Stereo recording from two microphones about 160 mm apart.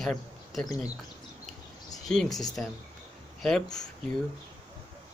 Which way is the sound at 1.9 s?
5° left (ahead or behind).